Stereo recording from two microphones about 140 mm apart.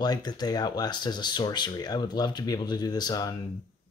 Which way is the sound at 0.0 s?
30° left (ahead or behind).